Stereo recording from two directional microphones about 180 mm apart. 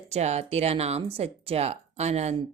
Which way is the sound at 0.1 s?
35° right (ahead or behind).